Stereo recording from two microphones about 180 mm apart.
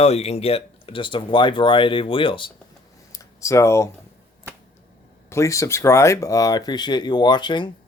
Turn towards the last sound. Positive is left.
turn(degrees=25)  # may be behind; listen again after turning